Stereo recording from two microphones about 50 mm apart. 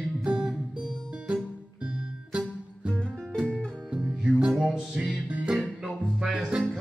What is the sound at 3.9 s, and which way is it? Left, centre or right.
Music, centre.